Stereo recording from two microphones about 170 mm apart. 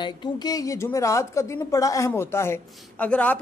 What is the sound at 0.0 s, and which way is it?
A woman's voice, 25° left (ahead or behind).